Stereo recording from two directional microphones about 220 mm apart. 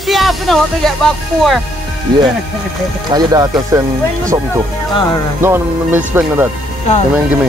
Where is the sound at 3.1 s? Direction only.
15° right (ahead or behind).